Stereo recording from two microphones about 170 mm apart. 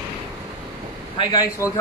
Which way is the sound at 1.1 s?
25° left (ahead or behind).